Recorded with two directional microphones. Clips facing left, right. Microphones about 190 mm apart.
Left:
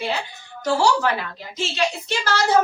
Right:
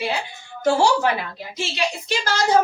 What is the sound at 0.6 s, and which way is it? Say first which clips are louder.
Speech: right 2 dB; 25° right (ahead or behind).